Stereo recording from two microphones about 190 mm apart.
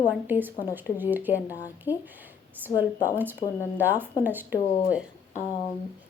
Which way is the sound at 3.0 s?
10° right (ahead or behind).